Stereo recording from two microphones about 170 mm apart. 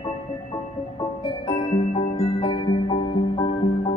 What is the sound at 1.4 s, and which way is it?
Music, 35° left (ahead or behind).